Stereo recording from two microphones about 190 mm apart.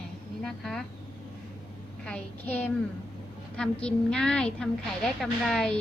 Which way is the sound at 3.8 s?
5° left (ahead or behind).